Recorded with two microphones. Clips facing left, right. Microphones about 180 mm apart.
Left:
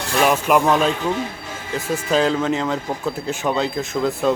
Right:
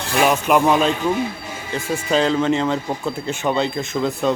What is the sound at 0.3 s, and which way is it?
Speech, centre (ahead or behind).